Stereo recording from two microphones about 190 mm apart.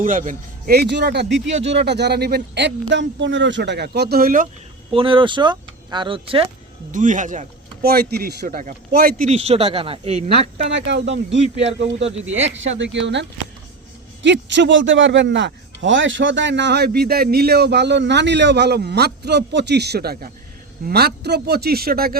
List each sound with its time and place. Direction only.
0.0 s speech: 45° right (ahead or behind)
0.8 s a man's voice: 60° right (ahead or behind)
4.9 s speech: 30° right (ahead or behind)
6.9 s speech: 40° right (ahead or behind)
9.2 s speech: 30° right (ahead or behind)
10.7 s a man's voice: 70° right (ahead or behind); by 22.2 s 50° right (ahead or behind)